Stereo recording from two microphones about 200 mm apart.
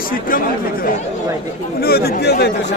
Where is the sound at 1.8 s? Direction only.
50° left (ahead or behind).